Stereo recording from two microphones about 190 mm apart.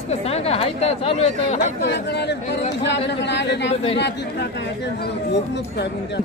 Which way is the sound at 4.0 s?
65° left (ahead or behind).